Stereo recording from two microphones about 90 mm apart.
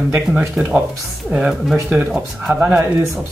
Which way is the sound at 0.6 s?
10° right (ahead or behind).